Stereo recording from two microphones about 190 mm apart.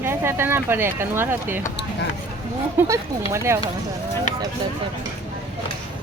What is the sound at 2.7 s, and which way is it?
Speech, 15° right (ahead or behind).